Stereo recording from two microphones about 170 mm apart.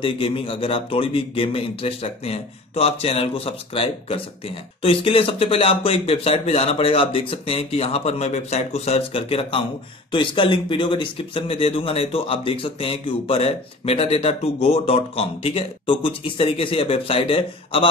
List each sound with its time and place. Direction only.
0.0 s speech: 35° left (ahead or behind)